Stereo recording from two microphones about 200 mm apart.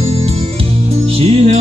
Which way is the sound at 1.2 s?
30° right (ahead or behind).